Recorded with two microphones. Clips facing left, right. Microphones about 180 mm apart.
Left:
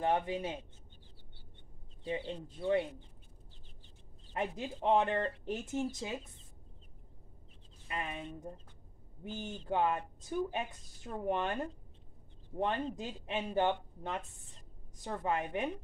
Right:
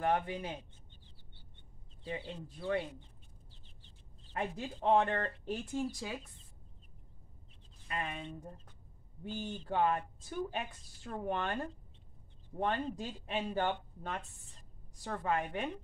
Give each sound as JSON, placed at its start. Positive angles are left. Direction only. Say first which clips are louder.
{"t": 0.0, "sound": "speech", "louder": "left 1 dB", "side_deg": 20}
{"t": 2.0, "sound": "speech", "louder": "left 4 dB", "side_deg": 20}
{"t": 4.3, "sound": "speech", "louder": "left 1 dB", "side_deg": 20}
{"t": 7.9, "sound": "speech", "louder": "even", "side_deg": 20}
{"t": 9.2, "sound": "speech", "louder": "right 1 dB", "side_deg": 20}
{"t": 11.1, "sound": "speech", "louder": "left 2 dB", "side_deg": 15}